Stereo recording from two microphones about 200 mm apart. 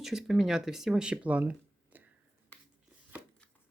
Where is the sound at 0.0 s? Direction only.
5° right (ahead or behind).